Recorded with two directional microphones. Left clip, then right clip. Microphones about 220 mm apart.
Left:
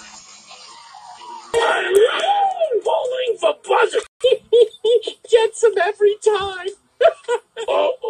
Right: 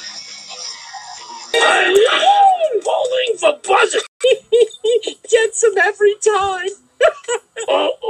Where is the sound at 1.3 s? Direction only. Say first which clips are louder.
Right 4 dB; 40° right (ahead or behind).